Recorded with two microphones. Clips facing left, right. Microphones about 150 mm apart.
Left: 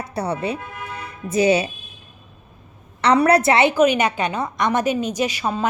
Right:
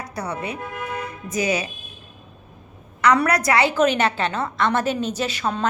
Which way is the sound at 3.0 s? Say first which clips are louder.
Left 3 dB; 30° left (ahead or behind).